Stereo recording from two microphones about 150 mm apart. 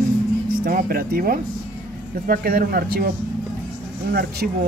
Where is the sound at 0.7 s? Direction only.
75° right (ahead or behind).